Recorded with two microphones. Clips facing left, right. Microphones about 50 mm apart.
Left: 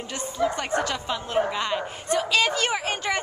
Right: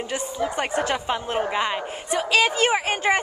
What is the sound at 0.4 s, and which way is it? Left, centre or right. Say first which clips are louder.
A woman's voice: left 1 dB; centre.